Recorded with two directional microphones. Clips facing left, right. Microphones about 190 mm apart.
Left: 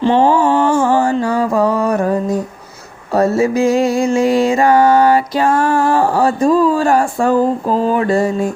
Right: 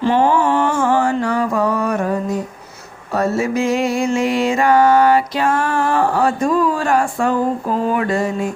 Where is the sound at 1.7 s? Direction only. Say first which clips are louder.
Left 4 dB; 35° left (ahead or behind).